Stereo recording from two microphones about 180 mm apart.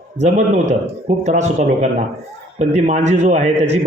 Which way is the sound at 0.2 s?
40° right (ahead or behind).